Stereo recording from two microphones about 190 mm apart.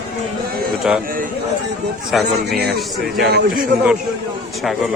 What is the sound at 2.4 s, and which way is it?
A man's voice, 60° right (ahead or behind).